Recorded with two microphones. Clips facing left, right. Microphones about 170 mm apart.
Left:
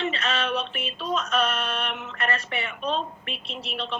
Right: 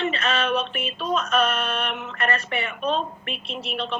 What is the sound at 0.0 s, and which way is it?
Synthetic singing, 55° right (ahead or behind).